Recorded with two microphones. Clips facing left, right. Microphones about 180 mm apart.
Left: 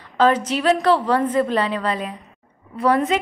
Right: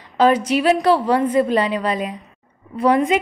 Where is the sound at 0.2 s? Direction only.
10° right (ahead or behind).